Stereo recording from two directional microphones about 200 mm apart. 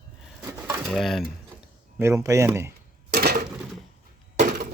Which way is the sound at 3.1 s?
50° right (ahead or behind).